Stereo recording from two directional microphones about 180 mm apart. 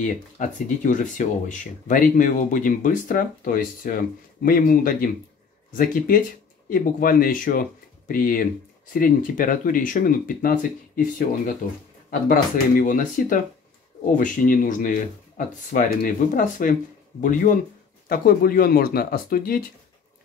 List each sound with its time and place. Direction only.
0.0 s speech: 45° left (ahead or behind)